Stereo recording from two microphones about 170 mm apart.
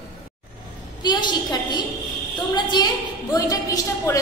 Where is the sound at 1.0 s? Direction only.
25° left (ahead or behind).